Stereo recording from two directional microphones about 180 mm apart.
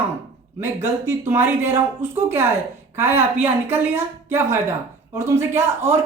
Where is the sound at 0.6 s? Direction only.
15° right (ahead or behind).